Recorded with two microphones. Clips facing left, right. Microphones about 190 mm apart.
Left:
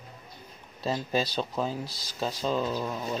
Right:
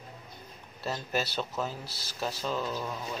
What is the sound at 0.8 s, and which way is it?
Speech, 15° left (ahead or behind).